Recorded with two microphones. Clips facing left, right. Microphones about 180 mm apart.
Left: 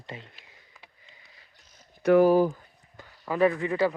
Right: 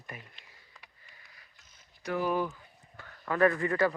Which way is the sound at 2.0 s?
60° left (ahead or behind).